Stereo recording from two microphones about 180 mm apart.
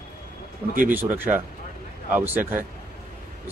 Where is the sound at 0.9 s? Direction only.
10° right (ahead or behind).